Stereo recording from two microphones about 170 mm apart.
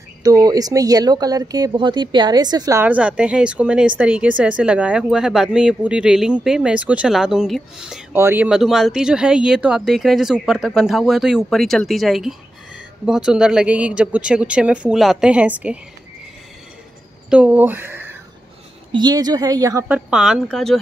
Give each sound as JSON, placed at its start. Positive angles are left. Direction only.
{"t": 0.2, "sound": "speech", "side_deg": -20}
{"t": 8.1, "sound": "speech", "side_deg": -15}
{"t": 17.3, "sound": "speech", "side_deg": -10}
{"t": 18.9, "sound": "a woman's voice", "side_deg": -25}
{"t": 19.9, "sound": "speech", "side_deg": -5}